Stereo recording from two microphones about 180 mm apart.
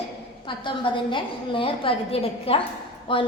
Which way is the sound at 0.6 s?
30° left (ahead or behind).